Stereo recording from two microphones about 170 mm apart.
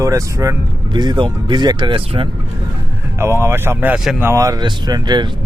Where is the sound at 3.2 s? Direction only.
15° right (ahead or behind).